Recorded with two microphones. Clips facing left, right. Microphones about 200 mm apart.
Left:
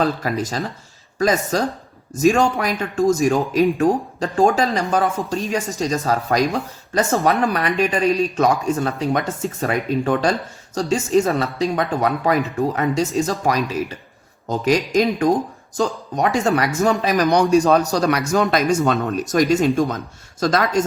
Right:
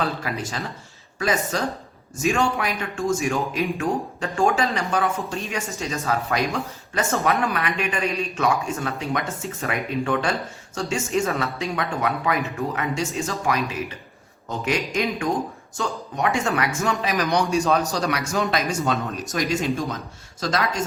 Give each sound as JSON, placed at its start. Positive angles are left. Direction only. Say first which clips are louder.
{"t": 0.0, "sound": "speech", "louder": "left 6 dB", "side_deg": 40}